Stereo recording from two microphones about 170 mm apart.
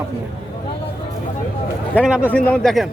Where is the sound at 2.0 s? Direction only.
5° right (ahead or behind).